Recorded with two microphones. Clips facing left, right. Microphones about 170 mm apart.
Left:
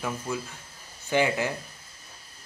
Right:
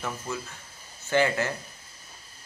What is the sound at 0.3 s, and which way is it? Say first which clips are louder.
Speech: left 2 dB; 15° left (ahead or behind).